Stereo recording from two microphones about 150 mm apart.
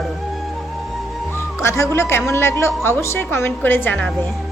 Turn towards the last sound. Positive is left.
turn(degrees=5)  # may be behind; listen again after turning